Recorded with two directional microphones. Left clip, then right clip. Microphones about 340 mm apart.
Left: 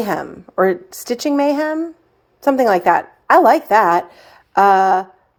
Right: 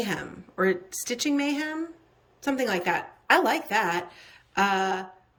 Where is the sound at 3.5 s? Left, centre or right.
Left.